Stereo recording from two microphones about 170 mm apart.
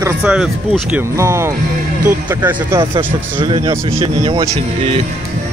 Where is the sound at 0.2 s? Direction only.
5° right (ahead or behind).